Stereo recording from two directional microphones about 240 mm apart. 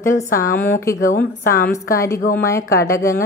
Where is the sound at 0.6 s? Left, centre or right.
Centre.